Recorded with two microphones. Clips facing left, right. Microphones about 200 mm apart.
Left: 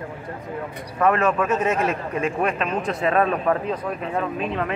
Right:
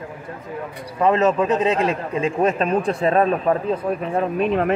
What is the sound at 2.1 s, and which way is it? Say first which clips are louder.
A man's voice: right 5 dB; 30° right (ahead or behind).